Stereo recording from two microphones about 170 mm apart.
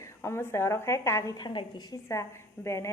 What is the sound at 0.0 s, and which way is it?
A woman's voice, 15° left (ahead or behind).